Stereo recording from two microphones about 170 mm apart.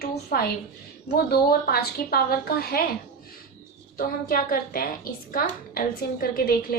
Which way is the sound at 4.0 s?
55° left (ahead or behind).